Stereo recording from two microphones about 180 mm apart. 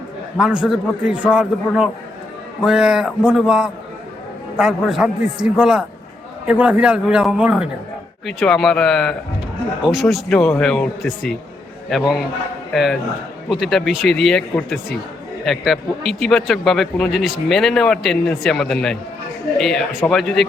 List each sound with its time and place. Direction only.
0.3 s a man's voice: 5° right (ahead or behind)